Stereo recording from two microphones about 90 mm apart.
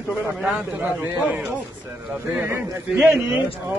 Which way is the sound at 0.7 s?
25° right (ahead or behind).